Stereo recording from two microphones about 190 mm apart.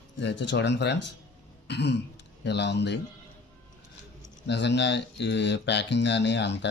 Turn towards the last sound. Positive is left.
turn(degrees=65)  # may be behind; listen again after turning